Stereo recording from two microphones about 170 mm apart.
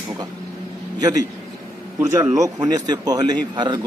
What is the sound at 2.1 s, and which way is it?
Speech, 20° right (ahead or behind).